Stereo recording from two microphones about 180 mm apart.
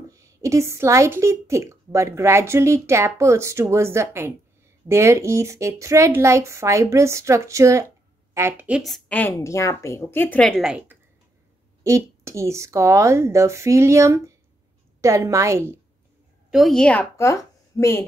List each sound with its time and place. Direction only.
0.1 s a woman's voice: 15° right (ahead or behind)
11.8 s a woman's voice: 15° right (ahead or behind)
16.4 s a woman's voice: centre (ahead or behind); by 18.0 s 15° left (ahead or behind)